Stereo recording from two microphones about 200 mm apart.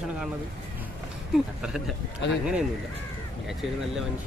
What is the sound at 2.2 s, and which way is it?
Speech, 60° left (ahead or behind).